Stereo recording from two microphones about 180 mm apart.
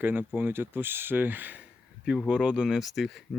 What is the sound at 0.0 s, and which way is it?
Speech, 10° right (ahead or behind).